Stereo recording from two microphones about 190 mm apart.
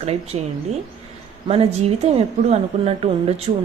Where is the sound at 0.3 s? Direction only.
30° right (ahead or behind).